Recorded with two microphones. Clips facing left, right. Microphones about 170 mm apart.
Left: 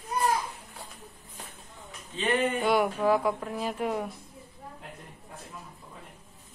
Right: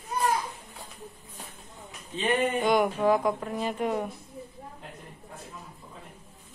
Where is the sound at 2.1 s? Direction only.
15° right (ahead or behind).